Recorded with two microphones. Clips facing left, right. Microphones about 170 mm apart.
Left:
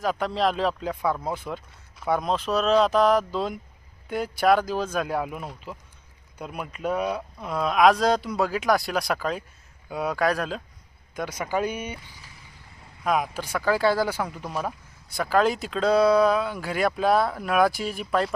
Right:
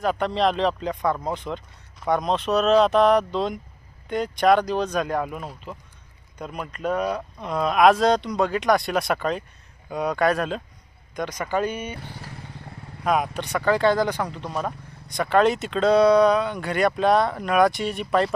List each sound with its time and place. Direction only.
0.0 s speech: centre (ahead or behind)
11.9 s motorcycle: 65° right (ahead or behind)
13.1 s speech: centre (ahead or behind)